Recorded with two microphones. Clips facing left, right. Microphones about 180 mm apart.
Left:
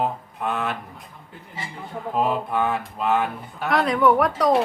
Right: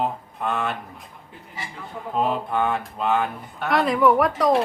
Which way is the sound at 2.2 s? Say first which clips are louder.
Even; centre (ahead or behind).